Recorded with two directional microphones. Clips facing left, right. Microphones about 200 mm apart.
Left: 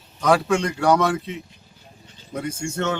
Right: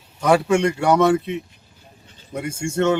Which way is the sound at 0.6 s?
25° right (ahead or behind).